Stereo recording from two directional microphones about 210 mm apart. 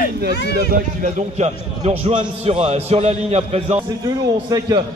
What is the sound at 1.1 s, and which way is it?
A man's voice, 30° right (ahead or behind).